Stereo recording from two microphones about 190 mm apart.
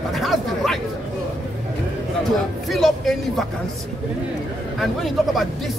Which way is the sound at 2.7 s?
Centre (ahead or behind).